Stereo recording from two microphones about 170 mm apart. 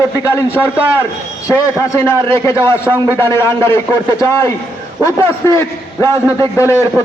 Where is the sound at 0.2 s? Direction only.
15° left (ahead or behind).